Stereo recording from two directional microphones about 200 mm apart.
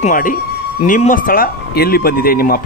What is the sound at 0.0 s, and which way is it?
Speech, 45° left (ahead or behind).